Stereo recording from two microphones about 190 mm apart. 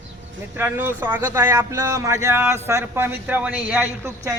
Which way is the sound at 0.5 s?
10° right (ahead or behind).